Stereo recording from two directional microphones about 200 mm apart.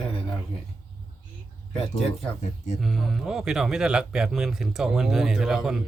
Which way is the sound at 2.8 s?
Centre (ahead or behind).